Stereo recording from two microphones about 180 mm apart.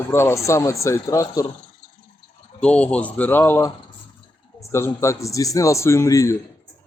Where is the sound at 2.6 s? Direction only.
5° left (ahead or behind).